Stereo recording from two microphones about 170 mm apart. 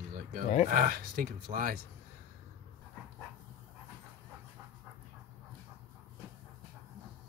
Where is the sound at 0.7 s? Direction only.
55° right (ahead or behind).